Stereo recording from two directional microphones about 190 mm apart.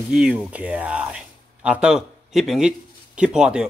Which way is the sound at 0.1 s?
5° right (ahead or behind).